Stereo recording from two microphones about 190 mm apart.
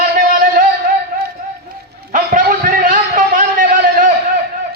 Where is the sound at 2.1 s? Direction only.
45° right (ahead or behind).